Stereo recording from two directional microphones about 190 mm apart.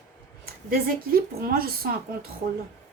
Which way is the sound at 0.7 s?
50° right (ahead or behind).